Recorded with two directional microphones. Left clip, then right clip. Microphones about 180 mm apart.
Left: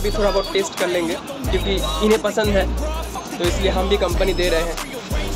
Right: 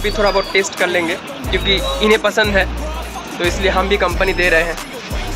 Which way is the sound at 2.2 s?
15° left (ahead or behind).